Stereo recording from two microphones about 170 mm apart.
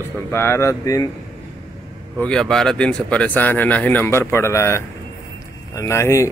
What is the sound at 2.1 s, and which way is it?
Speech, 5° left (ahead or behind).